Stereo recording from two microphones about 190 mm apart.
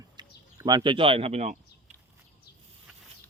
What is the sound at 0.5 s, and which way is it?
Speech, 20° right (ahead or behind).